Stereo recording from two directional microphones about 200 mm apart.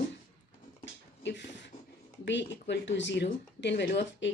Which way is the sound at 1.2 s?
60° left (ahead or behind).